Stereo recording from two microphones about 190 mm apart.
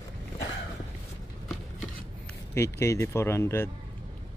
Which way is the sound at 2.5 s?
15° left (ahead or behind).